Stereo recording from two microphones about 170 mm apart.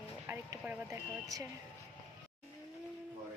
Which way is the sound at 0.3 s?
10° right (ahead or behind).